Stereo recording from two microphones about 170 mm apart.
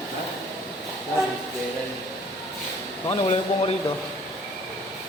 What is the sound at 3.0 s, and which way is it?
Speech, 30° left (ahead or behind).